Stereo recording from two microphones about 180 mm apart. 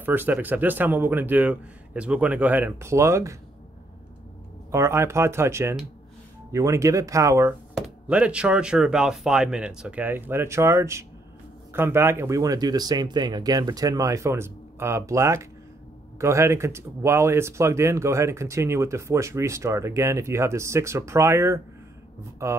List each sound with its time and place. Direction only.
0.0 s speech: 10° right (ahead or behind)
4.6 s speech: 15° right (ahead or behind)
7.7 s speech: 5° right (ahead or behind)